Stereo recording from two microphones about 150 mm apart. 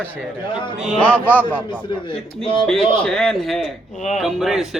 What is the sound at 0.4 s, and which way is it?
Speech, 30° left (ahead or behind).